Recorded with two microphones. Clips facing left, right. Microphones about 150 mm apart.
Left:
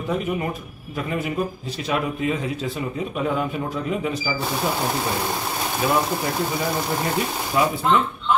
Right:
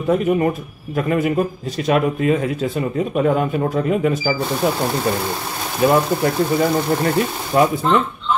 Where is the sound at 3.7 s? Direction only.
50° right (ahead or behind).